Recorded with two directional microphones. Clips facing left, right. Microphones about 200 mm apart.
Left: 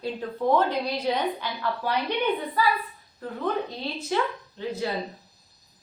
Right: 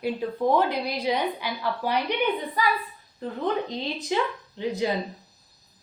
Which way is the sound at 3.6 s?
15° right (ahead or behind).